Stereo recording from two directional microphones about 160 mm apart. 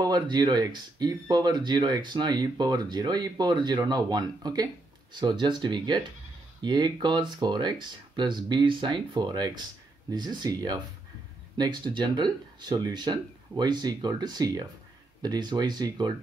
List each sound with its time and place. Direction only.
0.0 s speech: 25° right (ahead or behind)